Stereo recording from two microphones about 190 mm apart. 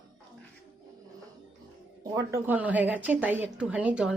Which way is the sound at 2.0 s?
15° right (ahead or behind).